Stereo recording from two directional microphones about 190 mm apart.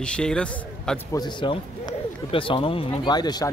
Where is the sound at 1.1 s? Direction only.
20° left (ahead or behind).